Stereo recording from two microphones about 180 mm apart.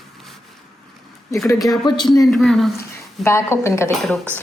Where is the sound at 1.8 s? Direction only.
25° left (ahead or behind).